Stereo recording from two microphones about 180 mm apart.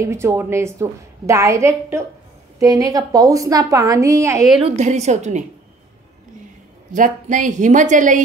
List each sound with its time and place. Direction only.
0.0 s a woman's voice: 15° right (ahead or behind)
4.6 s a woman's voice: 35° right (ahead or behind)
6.9 s a woman's voice: 45° right (ahead or behind)